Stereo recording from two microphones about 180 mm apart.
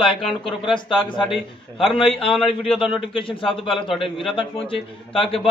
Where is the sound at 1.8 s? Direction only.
30° left (ahead or behind).